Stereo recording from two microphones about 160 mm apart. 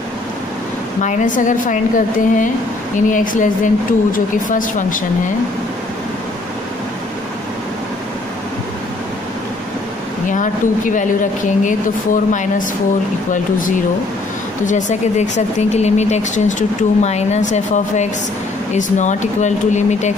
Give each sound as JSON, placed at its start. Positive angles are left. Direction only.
{"t": 1.0, "sound": "speech", "side_deg": 55}
{"t": 10.2, "sound": "speech", "side_deg": 55}